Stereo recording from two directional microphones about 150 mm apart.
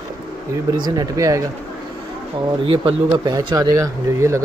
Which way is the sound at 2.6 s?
35° right (ahead or behind).